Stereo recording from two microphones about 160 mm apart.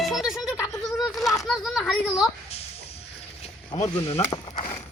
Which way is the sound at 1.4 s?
Centre (ahead or behind).